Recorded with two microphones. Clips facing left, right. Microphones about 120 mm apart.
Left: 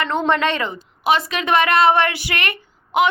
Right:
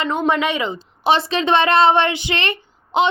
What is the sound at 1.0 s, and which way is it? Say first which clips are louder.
Speech: right 2 dB; 30° right (ahead or behind).